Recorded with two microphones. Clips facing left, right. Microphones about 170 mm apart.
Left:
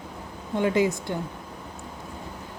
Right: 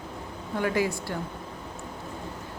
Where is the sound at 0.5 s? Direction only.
20° left (ahead or behind).